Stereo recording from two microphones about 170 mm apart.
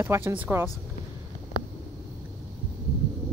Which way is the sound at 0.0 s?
15° right (ahead or behind).